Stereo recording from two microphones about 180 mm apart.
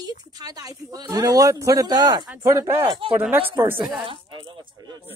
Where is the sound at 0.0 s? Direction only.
20° right (ahead or behind).